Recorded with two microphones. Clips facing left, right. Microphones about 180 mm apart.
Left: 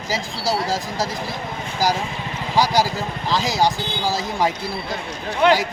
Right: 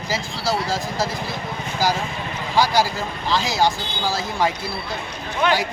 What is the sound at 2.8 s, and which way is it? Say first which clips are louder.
Speech: left 1 dB; 15° left (ahead or behind).